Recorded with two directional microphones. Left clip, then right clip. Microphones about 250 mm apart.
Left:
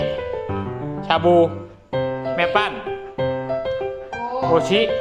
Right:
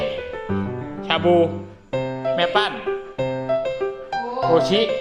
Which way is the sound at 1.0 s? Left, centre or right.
Centre.